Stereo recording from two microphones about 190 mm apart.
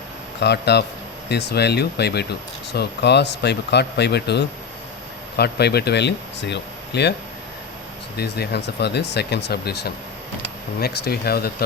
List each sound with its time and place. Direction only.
0.3 s speech: 60° left (ahead or behind)
8.1 s speech: 60° left (ahead or behind)